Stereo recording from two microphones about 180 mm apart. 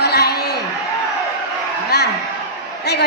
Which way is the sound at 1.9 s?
65° left (ahead or behind).